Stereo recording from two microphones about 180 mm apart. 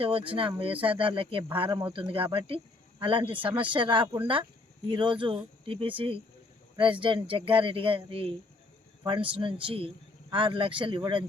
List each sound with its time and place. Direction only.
0.0 s speech: 30° right (ahead or behind)